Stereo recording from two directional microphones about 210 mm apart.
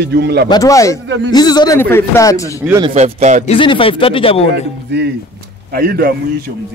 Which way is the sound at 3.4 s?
25° left (ahead or behind).